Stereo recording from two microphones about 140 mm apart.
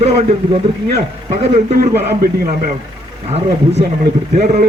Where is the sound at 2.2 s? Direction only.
90° right.